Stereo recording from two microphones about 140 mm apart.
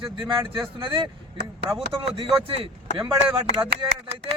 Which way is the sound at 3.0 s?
10° right (ahead or behind).